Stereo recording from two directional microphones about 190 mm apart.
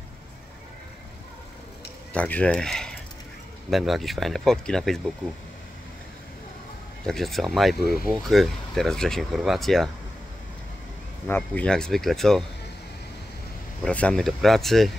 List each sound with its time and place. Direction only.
2.1 s speech: 5° left (ahead or behind)
7.1 s speech: centre (ahead or behind)
11.2 s speech: 10° left (ahead or behind)
13.8 s speech: 5° left (ahead or behind)